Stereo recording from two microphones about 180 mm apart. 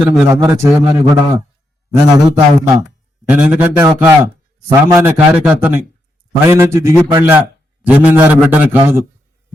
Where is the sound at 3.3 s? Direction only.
5° right (ahead or behind).